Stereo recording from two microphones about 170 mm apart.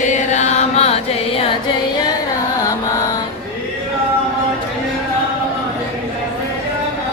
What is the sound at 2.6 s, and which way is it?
Music, 20° left (ahead or behind).